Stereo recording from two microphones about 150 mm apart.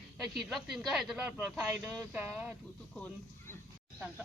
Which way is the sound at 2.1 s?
10° right (ahead or behind).